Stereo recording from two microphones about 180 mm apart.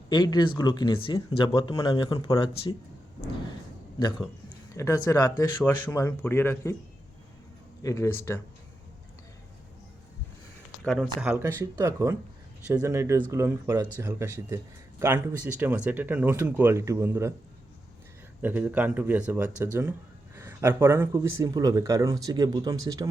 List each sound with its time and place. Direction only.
0.1 s speech: 25° left (ahead or behind)
4.4 s a sound: 20° left (ahead or behind)
5.4 s speech: 15° left (ahead or behind)
7.8 s speech: 15° left (ahead or behind)
10.8 s speech: centre (ahead or behind)
18.4 s speech: 10° right (ahead or behind)